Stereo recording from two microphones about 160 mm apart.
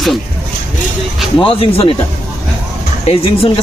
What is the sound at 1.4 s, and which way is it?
Speech, 35° left (ahead or behind).